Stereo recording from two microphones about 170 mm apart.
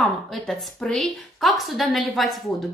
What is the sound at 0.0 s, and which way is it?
A woman's voice, 5° left (ahead or behind).